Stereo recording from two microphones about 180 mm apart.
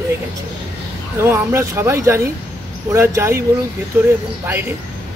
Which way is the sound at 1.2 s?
15° right (ahead or behind).